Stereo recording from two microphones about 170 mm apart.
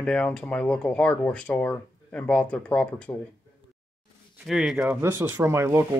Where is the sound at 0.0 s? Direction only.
5° left (ahead or behind).